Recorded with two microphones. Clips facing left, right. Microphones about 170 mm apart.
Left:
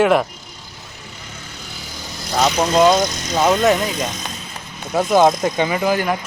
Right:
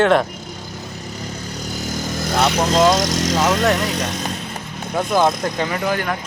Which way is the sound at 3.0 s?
90° right.